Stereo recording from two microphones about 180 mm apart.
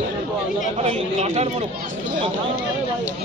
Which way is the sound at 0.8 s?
35° right (ahead or behind).